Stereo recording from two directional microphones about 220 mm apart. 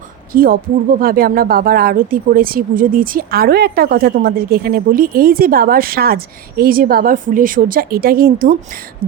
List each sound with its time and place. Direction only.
0.3 s speech: 40° right (ahead or behind)